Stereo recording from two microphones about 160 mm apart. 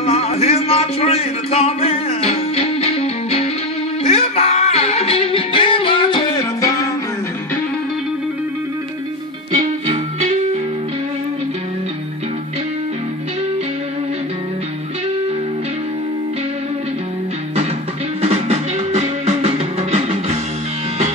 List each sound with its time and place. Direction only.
0.0 s a sound: 40° left (ahead or behind)
4.0 s music: 40° left (ahead or behind); by 6.9 s 20° left (ahead or behind)
9.8 s music: 45° right (ahead or behind)
18.2 s music: 45° right (ahead or behind)